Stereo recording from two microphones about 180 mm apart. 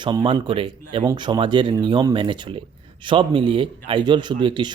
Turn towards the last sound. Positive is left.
turn(degrees=-25)  # may be behind; listen again after turning